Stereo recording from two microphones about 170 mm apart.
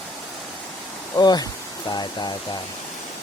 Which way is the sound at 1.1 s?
25° left (ahead or behind).